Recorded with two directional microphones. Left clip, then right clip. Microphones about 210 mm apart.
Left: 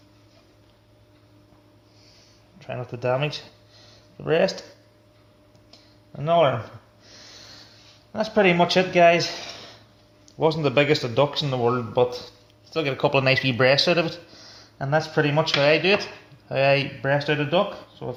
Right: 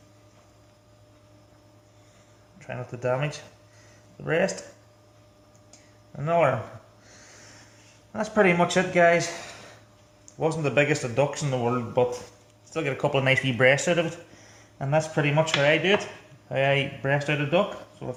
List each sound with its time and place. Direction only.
2.6 s speech: 20° left (ahead or behind)
6.1 s speech: 20° left (ahead or behind)
7.1 s snort: 15° left (ahead or behind)
8.1 s a man's voice: 20° left (ahead or behind)